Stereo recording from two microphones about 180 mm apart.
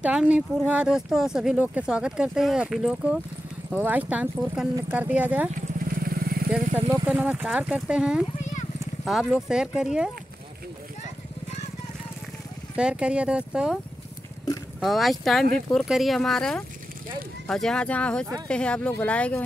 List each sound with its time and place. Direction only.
0.0 s speech: 5° right (ahead or behind)
5.9 s vehicle: 55° right (ahead or behind)
6.9 s speech: 10° right (ahead or behind)
12.7 s speech: 5° right (ahead or behind)
14.8 s speech: centre (ahead or behind)